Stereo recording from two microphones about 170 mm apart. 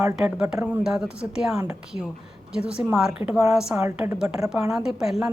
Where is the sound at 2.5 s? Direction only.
5° right (ahead or behind).